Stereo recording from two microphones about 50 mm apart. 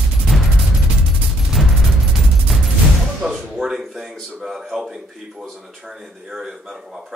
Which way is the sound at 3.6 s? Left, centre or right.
Centre.